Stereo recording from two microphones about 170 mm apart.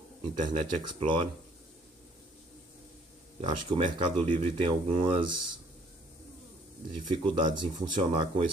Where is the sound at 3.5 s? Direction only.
30° right (ahead or behind).